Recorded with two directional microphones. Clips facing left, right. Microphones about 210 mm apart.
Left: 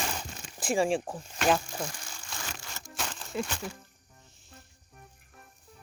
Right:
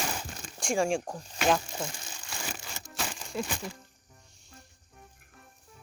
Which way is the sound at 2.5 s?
15° right (ahead or behind).